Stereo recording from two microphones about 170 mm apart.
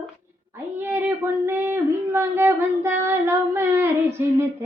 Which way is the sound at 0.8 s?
15° right (ahead or behind).